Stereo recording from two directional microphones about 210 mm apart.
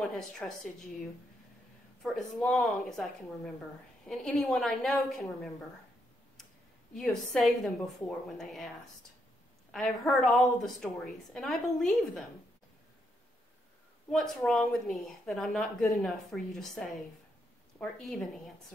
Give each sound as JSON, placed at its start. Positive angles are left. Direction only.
{"t": 0.0, "sound": "a woman's voice", "side_deg": 5}
{"t": 2.0, "sound": "speech", "side_deg": 0}
{"t": 7.0, "sound": "speech", "side_deg": 0}
{"t": 14.1, "sound": "speech", "side_deg": 0}